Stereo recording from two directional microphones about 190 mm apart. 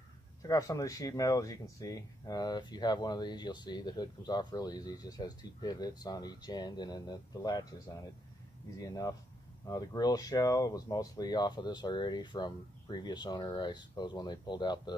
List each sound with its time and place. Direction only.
0.4 s speech: 20° left (ahead or behind)